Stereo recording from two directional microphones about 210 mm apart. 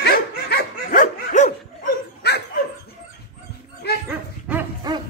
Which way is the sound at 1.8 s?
50° left (ahead or behind).